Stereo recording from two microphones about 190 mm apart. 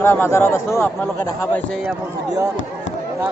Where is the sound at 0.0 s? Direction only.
15° left (ahead or behind).